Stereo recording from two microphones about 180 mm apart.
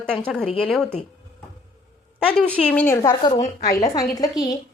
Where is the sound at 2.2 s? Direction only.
10° left (ahead or behind).